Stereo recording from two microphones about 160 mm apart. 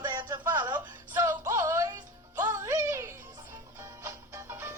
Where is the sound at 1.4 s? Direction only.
20° right (ahead or behind).